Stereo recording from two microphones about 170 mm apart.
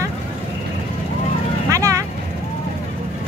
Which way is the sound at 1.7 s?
20° right (ahead or behind).